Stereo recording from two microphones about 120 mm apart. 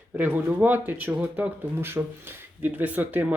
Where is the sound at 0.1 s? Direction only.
15° right (ahead or behind).